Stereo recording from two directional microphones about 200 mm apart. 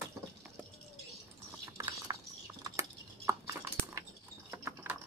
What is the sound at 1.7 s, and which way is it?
Mechanisms, 20° right (ahead or behind).